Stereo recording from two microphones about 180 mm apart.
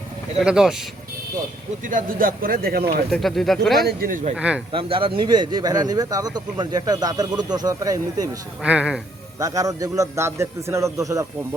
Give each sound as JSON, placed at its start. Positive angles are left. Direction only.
{"t": 0.3, "sound": "speech", "side_deg": -5}
{"t": 1.8, "sound": "speech", "side_deg": -50}
{"t": 3.1, "sound": "speech", "side_deg": 0}
{"t": 3.8, "sound": "speech", "side_deg": -50}
{"t": 4.4, "sound": "a man's voice", "side_deg": -5}
{"t": 4.7, "sound": "speech", "side_deg": -30}
{"t": 8.6, "sound": "a man's voice", "side_deg": -5}
{"t": 9.4, "sound": "a man's voice", "side_deg": -20}